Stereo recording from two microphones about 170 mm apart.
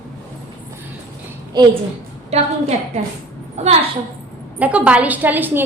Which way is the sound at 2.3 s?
40° right (ahead or behind).